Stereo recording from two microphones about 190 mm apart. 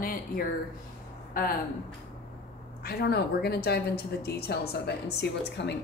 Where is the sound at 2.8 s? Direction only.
55° left (ahead or behind).